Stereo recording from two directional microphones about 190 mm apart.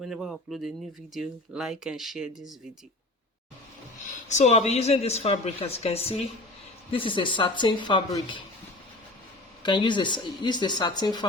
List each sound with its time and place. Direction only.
0.0 s speech: centre (ahead or behind)
4.3 s a woman's voice: 35° left (ahead or behind)
9.6 s speech: 25° left (ahead or behind)